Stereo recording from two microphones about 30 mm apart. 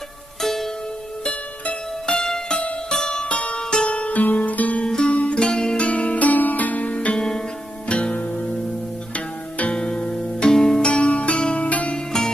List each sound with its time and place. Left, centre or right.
0.4 s music: centre
2.0 s music: left
3.3 s music: left
4.1 s music: left
4.8 s music: left
5.1 s music: left
5.4 s zither: left
5.8 s music: left
7.2 s music: left
7.9 s music: left
9.8 s music: left
10.5 s music: centre
10.8 s music: left